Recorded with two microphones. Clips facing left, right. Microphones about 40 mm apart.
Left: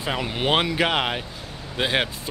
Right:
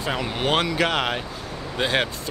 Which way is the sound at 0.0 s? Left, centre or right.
Centre.